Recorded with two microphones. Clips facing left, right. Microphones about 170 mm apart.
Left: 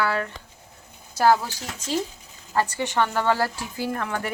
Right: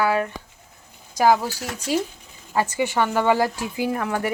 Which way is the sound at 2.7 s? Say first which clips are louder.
Right 3 dB; 10° right (ahead or behind).